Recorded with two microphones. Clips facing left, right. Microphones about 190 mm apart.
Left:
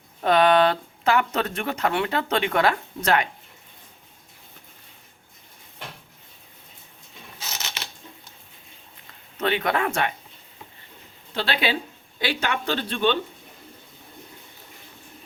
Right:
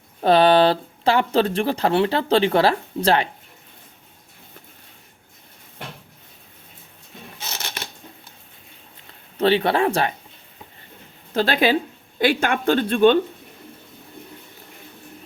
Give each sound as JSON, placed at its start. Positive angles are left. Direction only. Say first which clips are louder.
{"t": 0.2, "sound": "speech", "louder": "right 3 dB", "side_deg": -30}
{"t": 7.6, "sound": "coin", "louder": "right 4 dB", "side_deg": -50}
{"t": 9.4, "sound": "speech", "louder": "right 6 dB", "side_deg": -30}
{"t": 11.3, "sound": "speech", "louder": "right 7 dB", "side_deg": -45}